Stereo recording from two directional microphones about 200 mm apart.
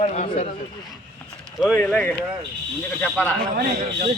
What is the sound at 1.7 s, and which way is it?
Speech, 10° left (ahead or behind).